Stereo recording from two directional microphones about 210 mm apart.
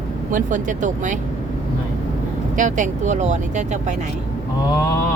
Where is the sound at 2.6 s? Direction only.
35° right (ahead or behind).